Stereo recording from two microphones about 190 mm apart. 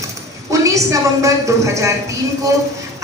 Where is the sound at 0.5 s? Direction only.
15° right (ahead or behind).